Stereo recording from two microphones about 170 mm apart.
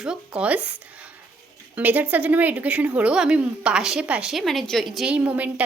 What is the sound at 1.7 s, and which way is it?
A woman's voice, 10° right (ahead or behind).